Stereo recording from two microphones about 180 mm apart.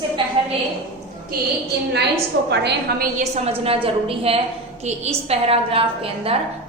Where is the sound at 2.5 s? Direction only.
70° right (ahead or behind).